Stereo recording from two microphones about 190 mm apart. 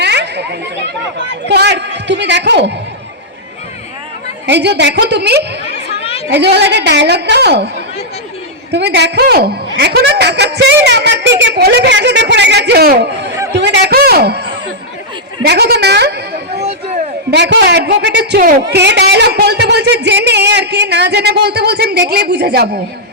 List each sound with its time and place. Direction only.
0.0 s chatter: 65° right (ahead or behind)
1.5 s a man's voice: 65° right (ahead or behind)
4.4 s a man's voice: 65° right (ahead or behind)
6.0 s chatter: 30° left (ahead or behind)
6.3 s a man's voice: 60° right (ahead or behind)
8.7 s a man's voice: 60° right (ahead or behind)
13.5 s a sound: 65° right (ahead or behind)
15.4 s a sound: 60° right (ahead or behind)
17.3 s a man's voice: 65° right (ahead or behind)